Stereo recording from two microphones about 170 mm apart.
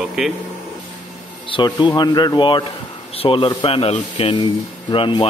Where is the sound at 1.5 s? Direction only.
25° left (ahead or behind).